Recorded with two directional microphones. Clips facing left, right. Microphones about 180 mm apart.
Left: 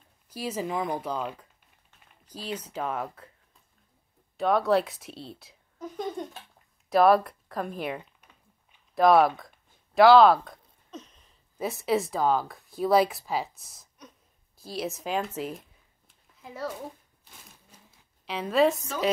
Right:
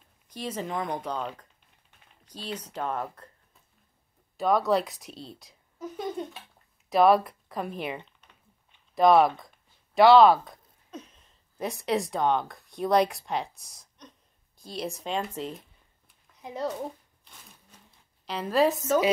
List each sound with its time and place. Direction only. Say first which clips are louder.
0.3 s speech: left 2 dB; 5° left (ahead or behind)
2.7 s speech: right 1 dB; 5° left (ahead or behind)
4.4 s speech: left 1 dB; centre (ahead or behind)
9.9 s a sound: even; centre (ahead or behind)
11.5 s speech: left 2 dB; 5° left (ahead or behind)
16.3 s a woman's voice: right 3 dB; 20° right (ahead or behind)
17.2 s a sound: even; 5° left (ahead or behind)